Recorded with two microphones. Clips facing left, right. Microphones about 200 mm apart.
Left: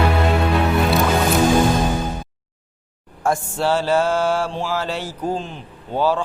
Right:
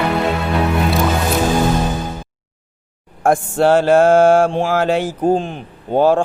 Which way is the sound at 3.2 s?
55° right (ahead or behind).